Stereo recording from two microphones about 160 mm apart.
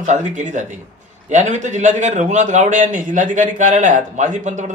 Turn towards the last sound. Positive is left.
turn(degrees=-50)  # may be behind; listen again after turning